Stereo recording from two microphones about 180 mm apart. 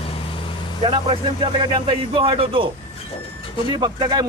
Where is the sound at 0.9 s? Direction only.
30° right (ahead or behind).